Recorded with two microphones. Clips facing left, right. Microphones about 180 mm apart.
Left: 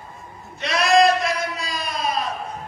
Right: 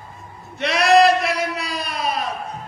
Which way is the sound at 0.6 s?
70° right (ahead or behind).